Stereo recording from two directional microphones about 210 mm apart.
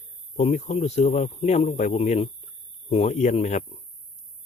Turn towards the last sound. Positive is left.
turn(degrees=35)  # may be behind; listen again after turning